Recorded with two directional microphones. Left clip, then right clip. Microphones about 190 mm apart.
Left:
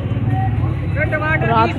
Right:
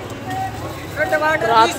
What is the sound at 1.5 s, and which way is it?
Speech, 20° right (ahead or behind).